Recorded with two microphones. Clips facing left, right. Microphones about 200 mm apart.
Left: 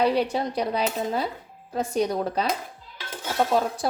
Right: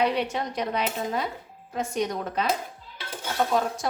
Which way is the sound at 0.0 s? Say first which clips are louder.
Left 3 dB; 35° left (ahead or behind).